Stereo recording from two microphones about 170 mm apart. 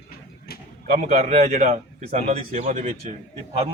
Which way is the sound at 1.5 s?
50° right (ahead or behind).